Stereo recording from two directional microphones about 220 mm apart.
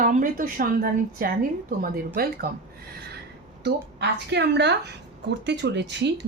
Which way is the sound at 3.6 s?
50° right (ahead or behind).